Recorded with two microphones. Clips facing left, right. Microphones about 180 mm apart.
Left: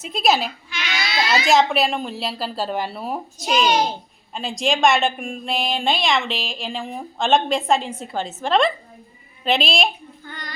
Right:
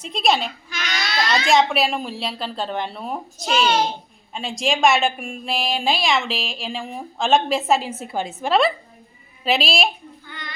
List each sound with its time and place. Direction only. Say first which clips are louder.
0.0 s a woman's voice: left 1 dB; 5° left (ahead or behind)
10.2 s child singing: left 2 dB; 45° left (ahead or behind)